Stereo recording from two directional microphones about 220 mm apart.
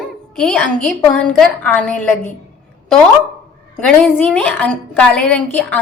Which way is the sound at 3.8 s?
5° left (ahead or behind).